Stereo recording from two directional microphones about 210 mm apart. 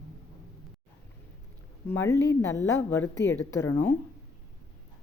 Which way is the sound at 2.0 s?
15° left (ahead or behind).